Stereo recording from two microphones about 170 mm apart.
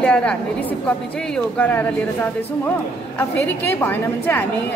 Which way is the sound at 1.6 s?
10° left (ahead or behind).